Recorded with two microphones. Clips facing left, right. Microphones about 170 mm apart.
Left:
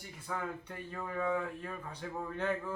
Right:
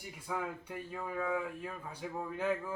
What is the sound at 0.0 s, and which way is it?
A man's voice, 10° right (ahead or behind).